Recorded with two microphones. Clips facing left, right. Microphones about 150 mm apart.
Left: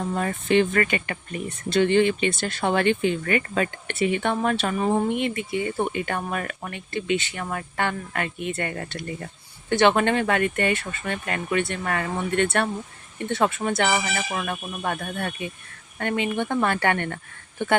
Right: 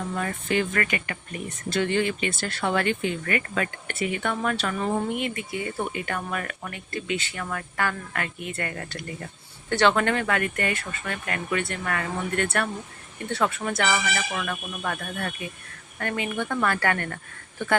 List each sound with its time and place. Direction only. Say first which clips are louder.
0.1 s speech: left 6 dB; 25° left (ahead or behind)